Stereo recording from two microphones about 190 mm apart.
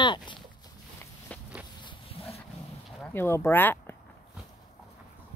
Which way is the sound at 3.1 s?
15° left (ahead or behind).